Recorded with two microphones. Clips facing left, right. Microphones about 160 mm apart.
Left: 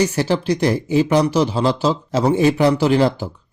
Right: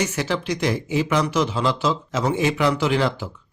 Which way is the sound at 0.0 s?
35° left (ahead or behind).